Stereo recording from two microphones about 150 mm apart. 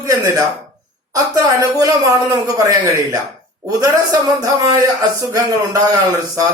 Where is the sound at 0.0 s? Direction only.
25° right (ahead or behind).